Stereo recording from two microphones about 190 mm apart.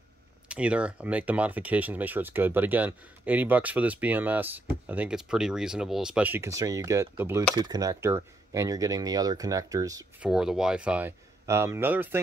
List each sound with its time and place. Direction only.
0.5 s speech: 5° right (ahead or behind)
10.2 s speech: 5° right (ahead or behind)